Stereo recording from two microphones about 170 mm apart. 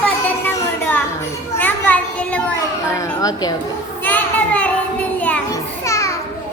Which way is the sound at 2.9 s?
20° left (ahead or behind).